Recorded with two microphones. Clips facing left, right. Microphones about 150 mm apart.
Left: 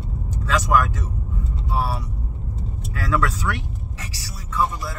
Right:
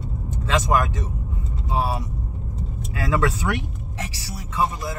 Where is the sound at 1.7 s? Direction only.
20° right (ahead or behind).